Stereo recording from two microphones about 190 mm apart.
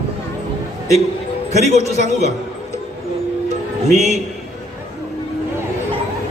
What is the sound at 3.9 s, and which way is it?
Speech, centre (ahead or behind).